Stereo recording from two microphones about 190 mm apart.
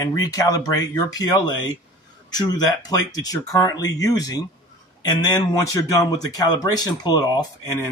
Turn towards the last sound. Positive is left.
turn(degrees=20)  # may be behind; listen again after turning